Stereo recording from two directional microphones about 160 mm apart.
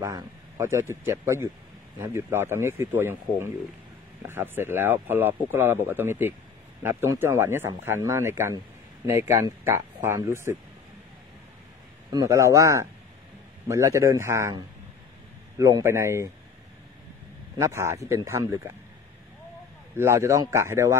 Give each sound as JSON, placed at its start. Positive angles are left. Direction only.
{"t": 0.0, "sound": "a man's voice", "side_deg": -20}
{"t": 12.1, "sound": "a man's voice", "side_deg": -20}
{"t": 17.6, "sound": "speech", "side_deg": -15}
{"t": 20.0, "sound": "speech", "side_deg": -15}